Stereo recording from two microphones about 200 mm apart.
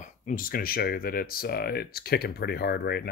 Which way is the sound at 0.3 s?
45° left (ahead or behind).